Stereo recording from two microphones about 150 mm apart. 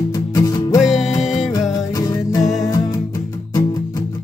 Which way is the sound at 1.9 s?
20° left (ahead or behind).